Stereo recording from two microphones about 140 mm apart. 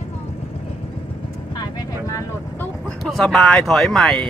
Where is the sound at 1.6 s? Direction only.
20° left (ahead or behind).